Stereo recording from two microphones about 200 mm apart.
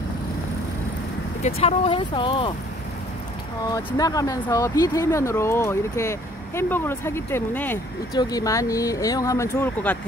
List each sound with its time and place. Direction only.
1.4 s speech: 30° left (ahead or behind)
3.6 s speech: 20° left (ahead or behind)